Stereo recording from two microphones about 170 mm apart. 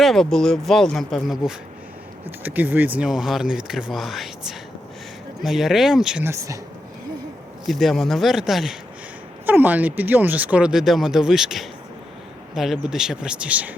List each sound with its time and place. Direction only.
0.0 s speech: centre (ahead or behind)
6.2 s speech: 15° right (ahead or behind)
7.7 s speech: centre (ahead or behind)